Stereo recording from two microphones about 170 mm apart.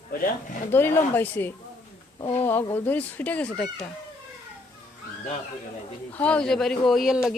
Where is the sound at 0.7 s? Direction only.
15° left (ahead or behind).